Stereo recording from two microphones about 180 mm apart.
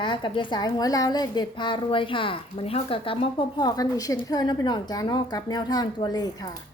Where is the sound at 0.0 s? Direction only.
25° left (ahead or behind).